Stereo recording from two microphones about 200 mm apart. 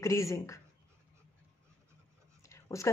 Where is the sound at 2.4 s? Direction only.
15° left (ahead or behind).